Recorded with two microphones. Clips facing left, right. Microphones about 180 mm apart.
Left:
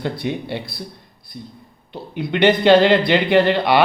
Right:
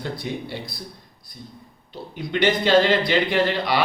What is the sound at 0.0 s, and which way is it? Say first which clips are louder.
Speech: left 5 dB; 65° left (ahead or behind).